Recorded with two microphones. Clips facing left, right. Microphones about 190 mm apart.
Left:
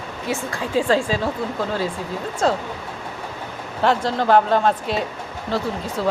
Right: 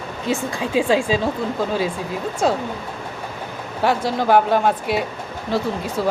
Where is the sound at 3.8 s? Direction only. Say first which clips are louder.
Even; 10° right (ahead or behind).